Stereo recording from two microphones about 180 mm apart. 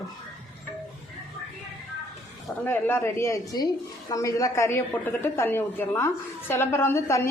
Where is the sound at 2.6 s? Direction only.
10° left (ahead or behind).